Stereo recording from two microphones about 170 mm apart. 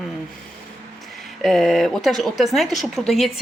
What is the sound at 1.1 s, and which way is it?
Speech, centre (ahead or behind).